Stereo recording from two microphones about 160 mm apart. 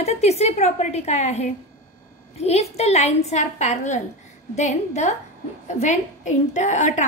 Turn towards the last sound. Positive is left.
turn(degrees=50)  # may be behind; listen again after turning